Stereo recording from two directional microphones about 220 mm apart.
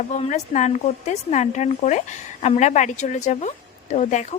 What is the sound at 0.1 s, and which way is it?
A woman's voice, 30° left (ahead or behind).